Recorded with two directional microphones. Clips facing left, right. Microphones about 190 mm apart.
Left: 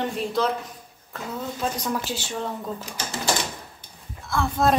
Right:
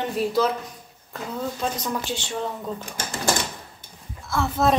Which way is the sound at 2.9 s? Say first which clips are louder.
Right 1 dB; 50° right (ahead or behind).